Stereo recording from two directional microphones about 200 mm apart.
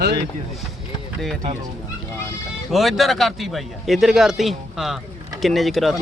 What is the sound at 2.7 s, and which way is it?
Speech, centre (ahead or behind).